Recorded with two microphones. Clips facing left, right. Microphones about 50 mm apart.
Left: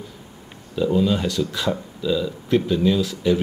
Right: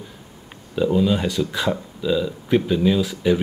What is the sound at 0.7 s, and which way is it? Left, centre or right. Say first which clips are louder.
Speech: right 1 dB; centre.